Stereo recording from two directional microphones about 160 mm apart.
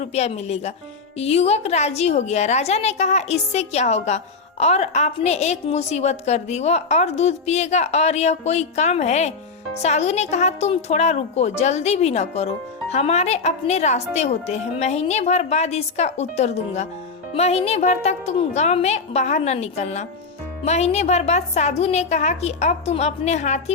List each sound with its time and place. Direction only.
0.0 s a woman's voice: 40° left (ahead or behind)